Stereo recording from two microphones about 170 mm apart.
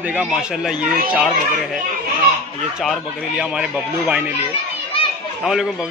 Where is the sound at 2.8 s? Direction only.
Centre (ahead or behind).